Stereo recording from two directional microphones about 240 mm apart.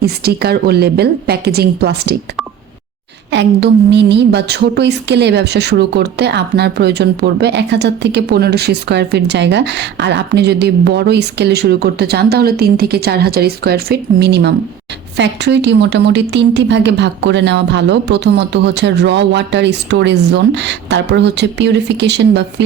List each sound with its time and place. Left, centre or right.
0.0 s a woman's voice: right
3.3 s a woman's voice: right